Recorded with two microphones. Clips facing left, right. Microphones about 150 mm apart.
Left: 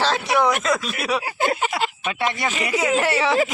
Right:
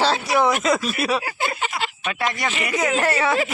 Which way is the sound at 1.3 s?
50° left (ahead or behind).